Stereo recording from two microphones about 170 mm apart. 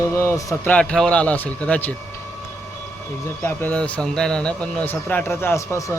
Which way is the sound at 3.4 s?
10° left (ahead or behind).